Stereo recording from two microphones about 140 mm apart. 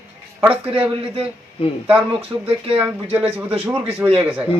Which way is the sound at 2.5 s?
40° right (ahead or behind).